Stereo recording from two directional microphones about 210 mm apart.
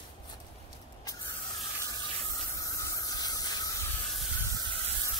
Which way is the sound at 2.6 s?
15° left (ahead or behind).